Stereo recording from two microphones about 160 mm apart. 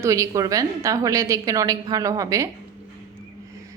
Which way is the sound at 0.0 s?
20° right (ahead or behind).